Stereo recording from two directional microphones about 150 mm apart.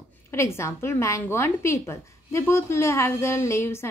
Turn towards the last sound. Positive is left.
turn(degrees=15)  # may be behind; listen again after turning